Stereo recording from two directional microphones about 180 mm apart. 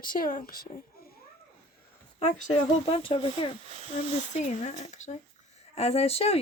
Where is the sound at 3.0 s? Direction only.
30° left (ahead or behind).